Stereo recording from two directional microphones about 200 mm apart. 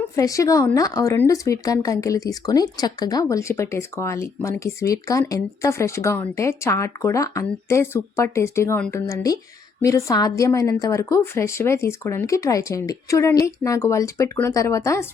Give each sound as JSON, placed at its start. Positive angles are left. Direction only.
{"t": 0.2, "sound": "speech", "side_deg": 15}